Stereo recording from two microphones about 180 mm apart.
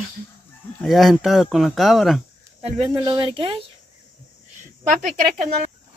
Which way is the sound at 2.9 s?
25° right (ahead or behind).